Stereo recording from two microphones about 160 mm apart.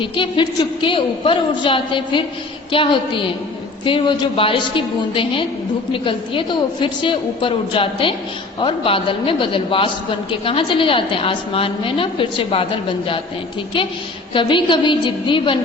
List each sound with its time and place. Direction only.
0.0 s a woman's voice: 30° left (ahead or behind)
14.3 s a woman's voice: 30° left (ahead or behind)